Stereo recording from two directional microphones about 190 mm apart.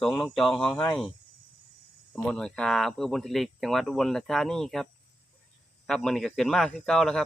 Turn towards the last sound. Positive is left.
turn(degrees=5)  # may be behind; listen again after turning